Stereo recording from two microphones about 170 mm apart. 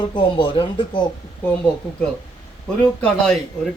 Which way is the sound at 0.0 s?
30° left (ahead or behind).